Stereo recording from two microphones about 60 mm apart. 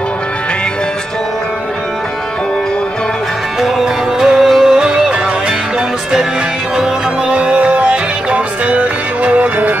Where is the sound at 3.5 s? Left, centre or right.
Centre.